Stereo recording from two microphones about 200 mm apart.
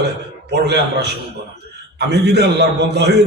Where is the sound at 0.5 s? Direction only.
55° right (ahead or behind).